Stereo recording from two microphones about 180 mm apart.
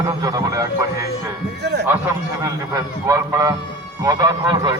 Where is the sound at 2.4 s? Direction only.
20° right (ahead or behind).